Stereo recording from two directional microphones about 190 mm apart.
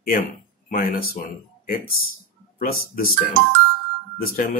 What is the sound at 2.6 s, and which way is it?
Speech, 50° left (ahead or behind).